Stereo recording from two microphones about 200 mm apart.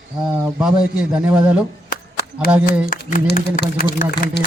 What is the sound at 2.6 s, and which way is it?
Speech, 45° left (ahead or behind).